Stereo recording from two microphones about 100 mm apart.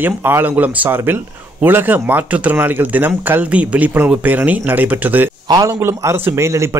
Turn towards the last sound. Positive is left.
turn(degrees=-25)  # may be behind; listen again after turning